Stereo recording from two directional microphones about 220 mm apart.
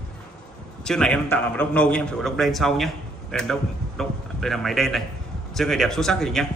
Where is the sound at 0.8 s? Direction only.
5° left (ahead or behind).